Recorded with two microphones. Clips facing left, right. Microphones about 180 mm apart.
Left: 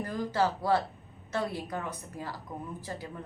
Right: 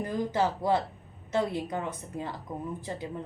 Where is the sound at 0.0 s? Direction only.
20° right (ahead or behind).